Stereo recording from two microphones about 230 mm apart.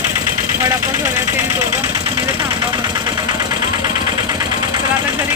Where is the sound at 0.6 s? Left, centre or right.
Centre.